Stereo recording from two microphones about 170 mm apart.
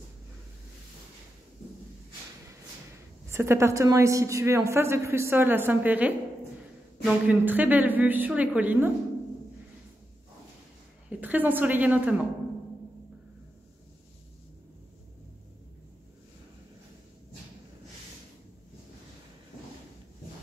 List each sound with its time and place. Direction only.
3.3 s a woman's voice: 15° right (ahead or behind)
11.1 s a woman's voice: 10° right (ahead or behind)